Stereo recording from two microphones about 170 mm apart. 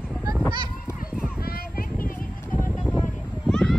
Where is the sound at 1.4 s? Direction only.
60° left (ahead or behind).